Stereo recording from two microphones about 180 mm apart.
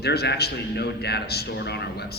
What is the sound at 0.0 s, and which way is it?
A man's voice, 65° left (ahead or behind).